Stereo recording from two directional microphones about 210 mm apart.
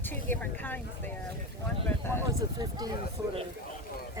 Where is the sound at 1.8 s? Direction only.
10° left (ahead or behind).